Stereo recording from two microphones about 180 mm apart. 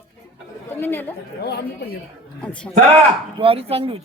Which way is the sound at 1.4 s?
65° left (ahead or behind).